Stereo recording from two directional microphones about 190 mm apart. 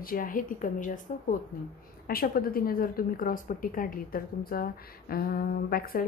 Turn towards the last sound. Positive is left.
turn(degrees=50)  # may be behind; listen again after turning